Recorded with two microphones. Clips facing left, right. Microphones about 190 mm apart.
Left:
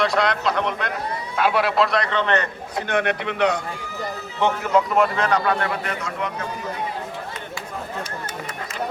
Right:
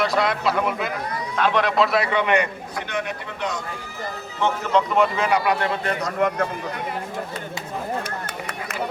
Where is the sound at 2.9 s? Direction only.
65° left (ahead or behind).